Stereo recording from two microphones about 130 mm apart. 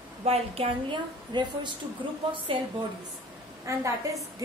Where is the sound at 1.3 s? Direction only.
35° right (ahead or behind).